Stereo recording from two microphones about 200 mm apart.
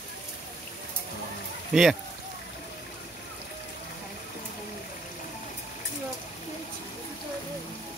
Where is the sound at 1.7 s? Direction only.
5° right (ahead or behind).